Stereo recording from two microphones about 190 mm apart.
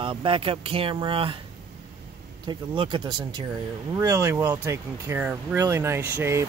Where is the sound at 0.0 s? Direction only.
25° right (ahead or behind).